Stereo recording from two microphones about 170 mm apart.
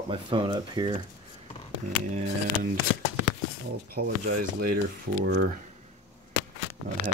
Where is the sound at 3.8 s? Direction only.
65° right (ahead or behind).